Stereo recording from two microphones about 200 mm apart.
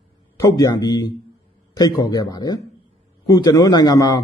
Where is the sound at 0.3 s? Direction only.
15° left (ahead or behind).